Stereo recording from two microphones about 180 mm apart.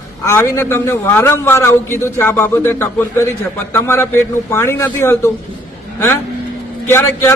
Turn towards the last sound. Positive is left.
turn(degrees=15)  # may be behind; listen again after turning